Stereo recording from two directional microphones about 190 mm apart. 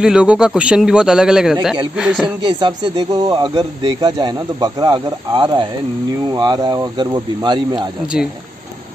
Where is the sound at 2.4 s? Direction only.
25° right (ahead or behind).